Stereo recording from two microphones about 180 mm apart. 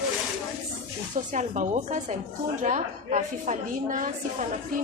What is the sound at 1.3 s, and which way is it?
A woman's voice, 45° right (ahead or behind).